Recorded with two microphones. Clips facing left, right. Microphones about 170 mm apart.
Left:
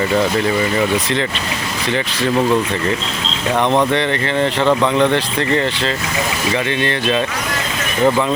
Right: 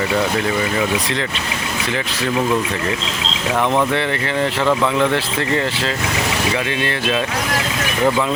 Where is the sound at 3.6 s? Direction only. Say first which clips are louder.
Left 2 dB; 20° left (ahead or behind).